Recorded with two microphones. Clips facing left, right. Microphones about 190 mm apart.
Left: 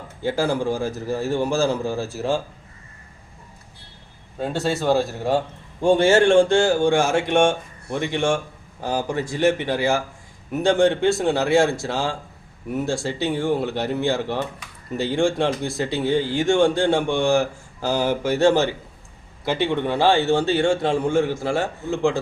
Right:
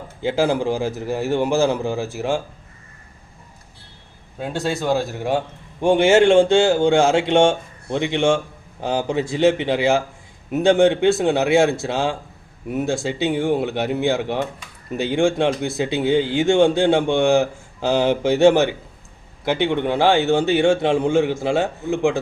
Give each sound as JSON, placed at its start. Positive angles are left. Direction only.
{"t": 0.3, "sound": "speech", "side_deg": -20}
{"t": 5.8, "sound": "a man's voice", "side_deg": -20}